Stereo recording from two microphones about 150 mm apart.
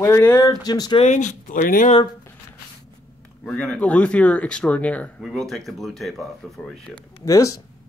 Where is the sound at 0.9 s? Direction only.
50° left (ahead or behind).